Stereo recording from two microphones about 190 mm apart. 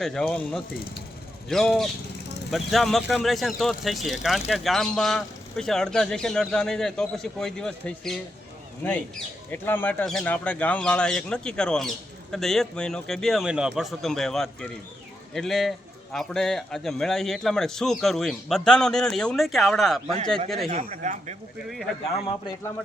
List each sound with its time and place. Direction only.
0.0 s speech: 5° left (ahead or behind)
20.7 s speech: 35° right (ahead or behind)